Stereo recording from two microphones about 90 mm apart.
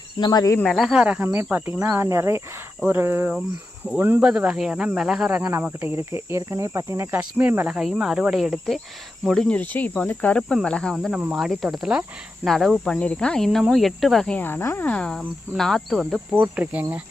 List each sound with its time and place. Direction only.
0.2 s speech: 45° left (ahead or behind)
0.6 s cricket: centre (ahead or behind)
1.2 s cricket: 25° right (ahead or behind)
4.2 s speech: 10° right (ahead or behind)
5.6 s cricket: 25° right (ahead or behind)
7.1 s cricket: 20° right (ahead or behind); by 8.8 s centre (ahead or behind)
9.3 s cricket: 10° left (ahead or behind)
10.9 s cricket: centre (ahead or behind)
14.3 s cricket: 25° left (ahead or behind)
14.8 s cricket: 10° left (ahead or behind)
16.3 s cricket: 20° right (ahead or behind)